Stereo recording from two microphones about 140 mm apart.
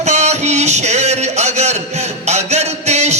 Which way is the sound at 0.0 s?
55° right (ahead or behind).